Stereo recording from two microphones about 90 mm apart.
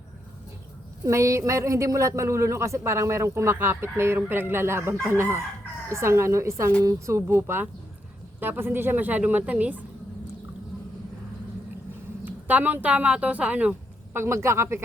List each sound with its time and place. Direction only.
1.0 s a woman's voice: 35° right (ahead or behind); by 9.8 s 15° right (ahead or behind)
12.2 s speech: 20° right (ahead or behind)
14.2 s a woman's voice: 30° right (ahead or behind)